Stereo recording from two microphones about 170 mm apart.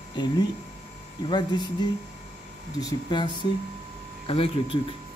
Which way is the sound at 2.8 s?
25° left (ahead or behind).